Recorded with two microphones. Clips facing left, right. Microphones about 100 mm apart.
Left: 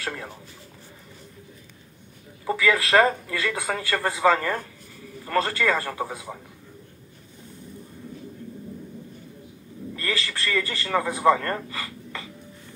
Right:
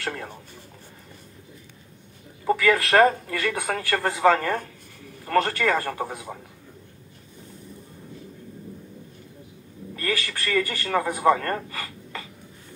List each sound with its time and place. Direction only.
0.0 s speech: 50° right (ahead or behind)
2.4 s speech: 60° right (ahead or behind)
9.9 s a man's voice: 50° right (ahead or behind)